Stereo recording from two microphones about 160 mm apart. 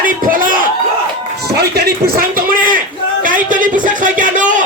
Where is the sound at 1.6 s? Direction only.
75° right (ahead or behind); by 4.6 s 55° right (ahead or behind).